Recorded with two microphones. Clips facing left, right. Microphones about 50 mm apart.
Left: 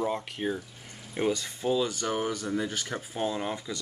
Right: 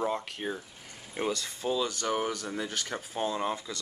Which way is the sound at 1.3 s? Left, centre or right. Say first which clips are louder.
Left 3 dB; centre.